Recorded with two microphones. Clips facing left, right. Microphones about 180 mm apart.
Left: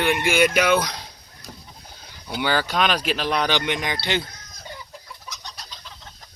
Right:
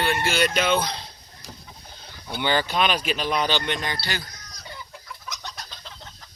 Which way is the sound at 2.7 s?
5° right (ahead or behind).